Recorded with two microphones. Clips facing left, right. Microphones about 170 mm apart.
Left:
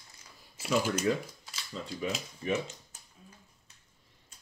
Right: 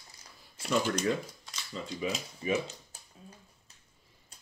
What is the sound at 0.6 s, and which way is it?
Speech, 5° left (ahead or behind).